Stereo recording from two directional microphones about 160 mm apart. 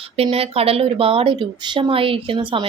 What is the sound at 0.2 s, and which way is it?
Speech, 40° right (ahead or behind).